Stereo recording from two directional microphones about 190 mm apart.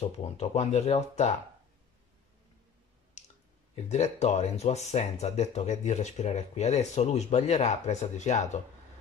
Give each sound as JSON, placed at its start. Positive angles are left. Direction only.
{"t": 0.0, "sound": "speech", "side_deg": 35}
{"t": 3.2, "sound": "clicking", "side_deg": 35}
{"t": 3.7, "sound": "speech", "side_deg": 35}